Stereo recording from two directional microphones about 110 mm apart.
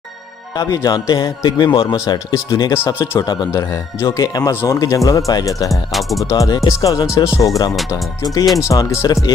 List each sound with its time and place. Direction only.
0.7 s speech: 35° left (ahead or behind)
2.7 s speech: 20° left (ahead or behind)
3.2 s speech: 40° left (ahead or behind)
3.5 s speech: 25° left (ahead or behind)
5.7 s music: centre (ahead or behind)
6.3 s speech: 30° left (ahead or behind)